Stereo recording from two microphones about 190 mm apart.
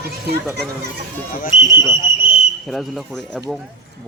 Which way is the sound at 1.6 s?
20° left (ahead or behind).